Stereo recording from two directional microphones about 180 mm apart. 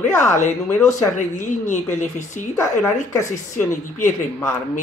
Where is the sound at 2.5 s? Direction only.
15° left (ahead or behind).